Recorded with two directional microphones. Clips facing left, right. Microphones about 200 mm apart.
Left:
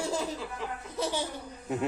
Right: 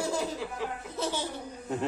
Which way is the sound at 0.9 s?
15° left (ahead or behind).